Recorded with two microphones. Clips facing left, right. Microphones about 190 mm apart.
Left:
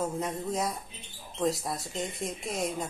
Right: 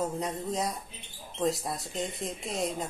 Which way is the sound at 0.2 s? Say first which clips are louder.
Even; centre (ahead or behind).